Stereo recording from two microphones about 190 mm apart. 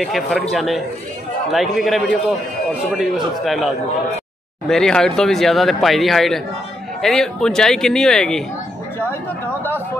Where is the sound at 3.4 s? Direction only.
Centre (ahead or behind).